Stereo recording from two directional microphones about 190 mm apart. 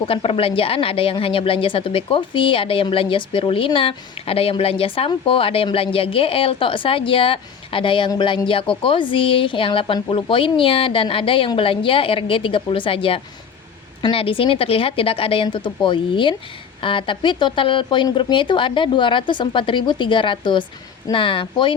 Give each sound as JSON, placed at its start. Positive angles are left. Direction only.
{"t": 0.0, "sound": "speech", "side_deg": 30}